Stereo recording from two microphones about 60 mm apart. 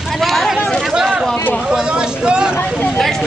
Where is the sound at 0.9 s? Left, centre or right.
Centre.